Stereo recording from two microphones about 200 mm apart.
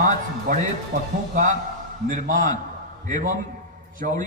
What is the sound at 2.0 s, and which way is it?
A man's voice, 40° right (ahead or behind).